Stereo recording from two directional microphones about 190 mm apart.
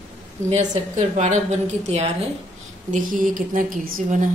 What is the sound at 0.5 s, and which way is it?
A woman's voice, 35° right (ahead or behind).